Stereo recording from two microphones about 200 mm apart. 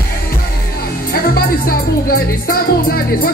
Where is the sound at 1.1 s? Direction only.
50° left (ahead or behind).